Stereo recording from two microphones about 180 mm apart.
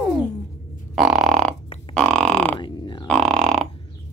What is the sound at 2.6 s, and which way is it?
Grunt, 25° left (ahead or behind).